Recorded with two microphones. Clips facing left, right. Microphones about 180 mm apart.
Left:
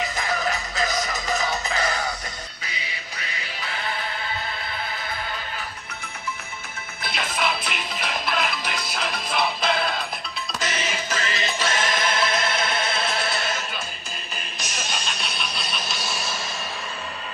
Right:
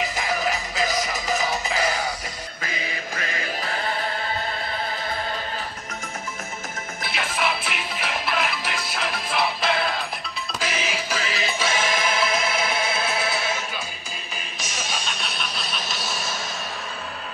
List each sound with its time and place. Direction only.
0.2 s music: 10° right (ahead or behind)
2.6 s music: 50° right (ahead or behind)
7.1 s music: centre (ahead or behind)
14.6 s vehicle: 5° right (ahead or behind)